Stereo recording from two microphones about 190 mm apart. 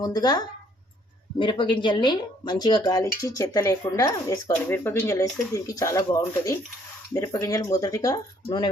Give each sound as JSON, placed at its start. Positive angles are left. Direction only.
{"t": 0.0, "sound": "speech", "side_deg": 20}